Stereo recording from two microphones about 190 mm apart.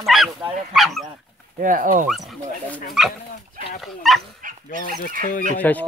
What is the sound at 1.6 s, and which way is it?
Speech, 45° right (ahead or behind).